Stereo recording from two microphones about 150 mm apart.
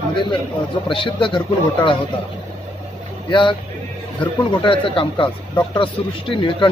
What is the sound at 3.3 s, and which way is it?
Speech, 30° left (ahead or behind).